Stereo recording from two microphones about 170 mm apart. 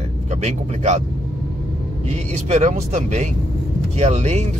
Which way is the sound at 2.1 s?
40° right (ahead or behind).